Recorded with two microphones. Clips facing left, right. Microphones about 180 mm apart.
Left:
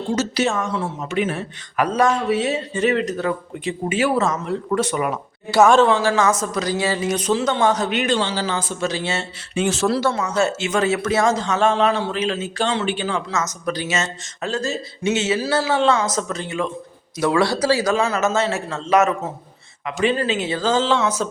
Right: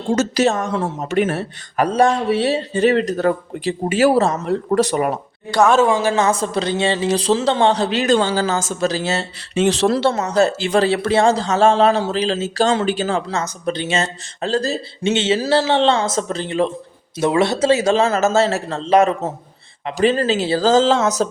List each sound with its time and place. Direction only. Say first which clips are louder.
0.1 s speech: right 5 dB; 45° right (ahead or behind)
5.5 s speech: left 1 dB; centre (ahead or behind)
5.8 s speech: right 1 dB; 15° right (ahead or behind); by 8.1 s 30° right (ahead or behind)
8.1 s speech: right 5 dB; 50° right (ahead or behind)
17.2 s speech: right 2 dB; 25° right (ahead or behind)
18.0 s speech: right 4 dB; 35° right (ahead or behind)